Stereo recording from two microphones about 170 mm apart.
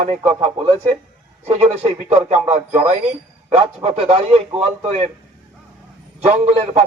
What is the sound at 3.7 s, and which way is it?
Speech, 35° right (ahead or behind).